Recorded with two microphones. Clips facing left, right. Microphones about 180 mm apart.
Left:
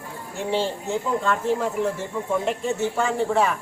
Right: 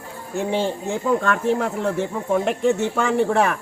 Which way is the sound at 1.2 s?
60° right (ahead or behind).